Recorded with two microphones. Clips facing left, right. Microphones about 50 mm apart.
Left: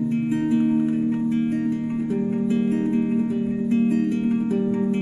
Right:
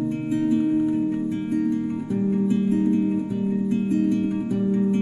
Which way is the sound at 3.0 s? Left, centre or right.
Left.